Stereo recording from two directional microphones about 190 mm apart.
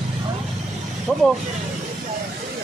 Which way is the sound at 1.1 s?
Centre (ahead or behind).